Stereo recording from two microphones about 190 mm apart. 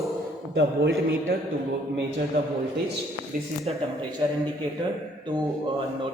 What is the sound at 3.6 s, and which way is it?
Speech, 20° right (ahead or behind).